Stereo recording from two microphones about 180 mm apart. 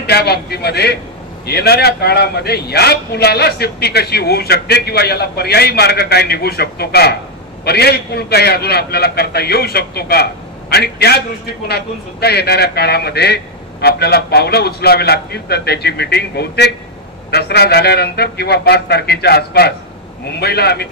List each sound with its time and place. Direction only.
0.0 s a man's voice: 65° left (ahead or behind)